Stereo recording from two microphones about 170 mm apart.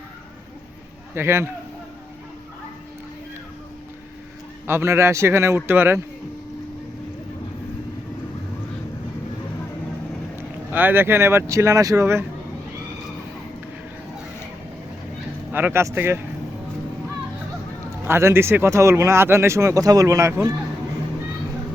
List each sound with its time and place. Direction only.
1.1 s speech: 15° right (ahead or behind)
4.6 s speech: 15° right (ahead or behind)
10.7 s speech: 10° right (ahead or behind)
15.5 s speech: 15° right (ahead or behind)
18.0 s speech: 15° right (ahead or behind)